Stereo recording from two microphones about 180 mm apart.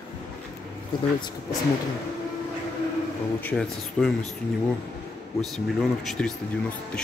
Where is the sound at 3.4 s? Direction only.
Centre (ahead or behind).